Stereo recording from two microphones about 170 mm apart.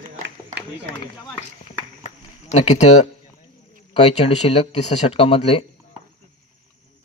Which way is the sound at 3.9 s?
40° left (ahead or behind).